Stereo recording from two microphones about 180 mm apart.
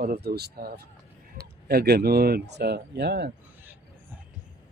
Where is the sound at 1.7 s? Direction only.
60° right (ahead or behind).